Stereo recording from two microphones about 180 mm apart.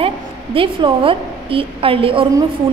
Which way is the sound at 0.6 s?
30° right (ahead or behind).